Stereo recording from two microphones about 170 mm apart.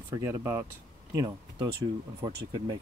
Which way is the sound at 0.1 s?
15° right (ahead or behind).